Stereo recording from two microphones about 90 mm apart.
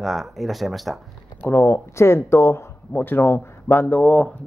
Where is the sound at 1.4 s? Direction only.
25° left (ahead or behind).